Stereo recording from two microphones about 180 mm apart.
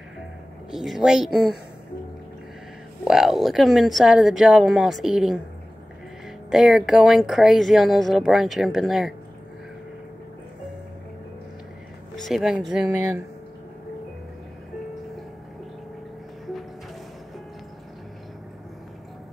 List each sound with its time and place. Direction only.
0.7 s speech: centre (ahead or behind)
3.0 s speech: 5° right (ahead or behind)
6.5 s speech: centre (ahead or behind)
12.2 s speech: centre (ahead or behind)